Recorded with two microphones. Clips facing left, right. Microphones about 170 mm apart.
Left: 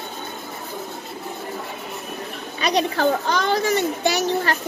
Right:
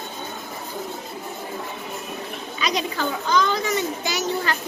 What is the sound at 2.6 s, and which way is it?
A child's voice, 55° left (ahead or behind).